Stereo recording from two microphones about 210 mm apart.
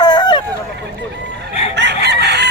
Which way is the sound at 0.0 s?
20° left (ahead or behind).